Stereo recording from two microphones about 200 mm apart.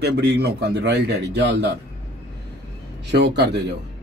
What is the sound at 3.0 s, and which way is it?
Speech, 55° right (ahead or behind).